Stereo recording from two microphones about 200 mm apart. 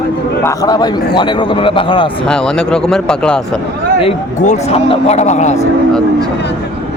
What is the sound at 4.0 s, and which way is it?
Speech, 30° left (ahead or behind).